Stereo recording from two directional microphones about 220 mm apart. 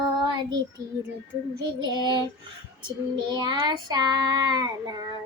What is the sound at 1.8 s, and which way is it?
Child singing, 20° right (ahead or behind).